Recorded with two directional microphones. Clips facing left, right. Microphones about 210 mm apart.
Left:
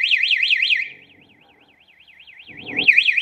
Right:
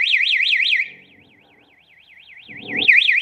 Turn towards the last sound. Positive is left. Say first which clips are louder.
# right 1 dB
turn(degrees=-5)  # may be behind; listen again after turning